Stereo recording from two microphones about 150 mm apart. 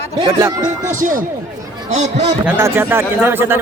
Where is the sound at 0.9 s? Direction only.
60° right (ahead or behind).